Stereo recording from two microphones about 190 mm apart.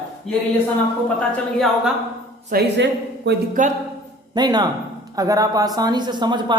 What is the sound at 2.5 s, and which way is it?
Speech, 65° right (ahead or behind).